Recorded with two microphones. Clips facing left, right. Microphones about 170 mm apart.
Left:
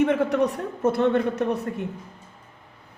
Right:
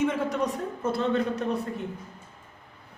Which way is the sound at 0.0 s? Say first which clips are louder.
Left 5 dB; 65° left (ahead or behind).